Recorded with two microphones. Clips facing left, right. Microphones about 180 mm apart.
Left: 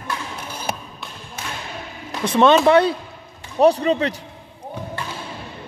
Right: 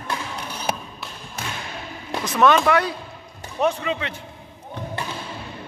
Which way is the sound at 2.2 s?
30° left (ahead or behind).